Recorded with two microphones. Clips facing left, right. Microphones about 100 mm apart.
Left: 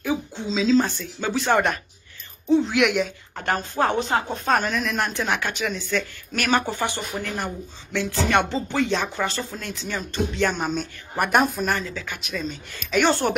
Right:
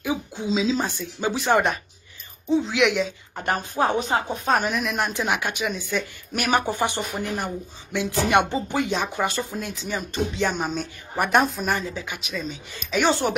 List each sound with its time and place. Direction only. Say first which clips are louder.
0.0 s a sound: left 1 dB; 10° right (ahead or behind)
0.7 s speech: left 5 dB; 5° right (ahead or behind)
3.4 s speech: even; 10° right (ahead or behind)
6.6 s speech: right 2 dB; 20° right (ahead or behind); by 11.8 s centre (ahead or behind)
11.8 s speech: right 1 dB; 20° right (ahead or behind)
12.1 s speech: left 1 dB; centre (ahead or behind)